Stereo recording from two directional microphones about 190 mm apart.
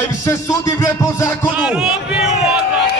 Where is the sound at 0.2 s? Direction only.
15° left (ahead or behind).